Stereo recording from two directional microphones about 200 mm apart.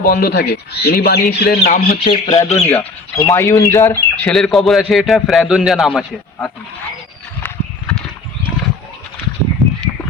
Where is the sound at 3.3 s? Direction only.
15° left (ahead or behind).